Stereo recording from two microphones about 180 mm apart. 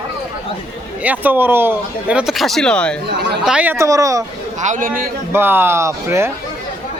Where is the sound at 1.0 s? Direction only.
10° right (ahead or behind).